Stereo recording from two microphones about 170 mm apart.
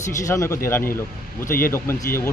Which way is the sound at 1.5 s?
55° left (ahead or behind).